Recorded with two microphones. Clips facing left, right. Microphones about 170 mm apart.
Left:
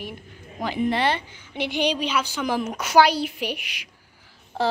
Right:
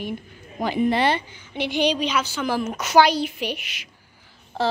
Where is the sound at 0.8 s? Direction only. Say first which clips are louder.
Right 2 dB; 5° right (ahead or behind).